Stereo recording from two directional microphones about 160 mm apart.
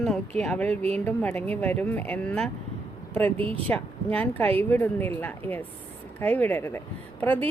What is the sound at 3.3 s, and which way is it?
Speech, 35° right (ahead or behind).